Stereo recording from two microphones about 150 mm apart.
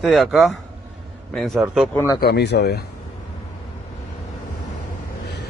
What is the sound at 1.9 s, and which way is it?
Speech, 15° left (ahead or behind).